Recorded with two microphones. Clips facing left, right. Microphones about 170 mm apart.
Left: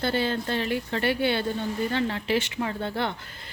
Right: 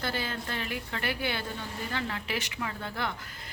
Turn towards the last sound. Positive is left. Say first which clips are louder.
# left 6 dB
turn(degrees=30)  # may be behind; listen again after turning